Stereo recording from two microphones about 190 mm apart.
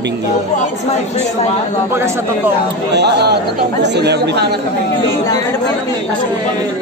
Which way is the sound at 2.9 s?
60° right (ahead or behind).